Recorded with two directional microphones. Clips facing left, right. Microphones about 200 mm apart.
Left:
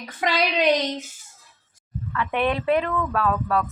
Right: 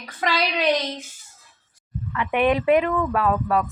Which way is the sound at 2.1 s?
15° right (ahead or behind).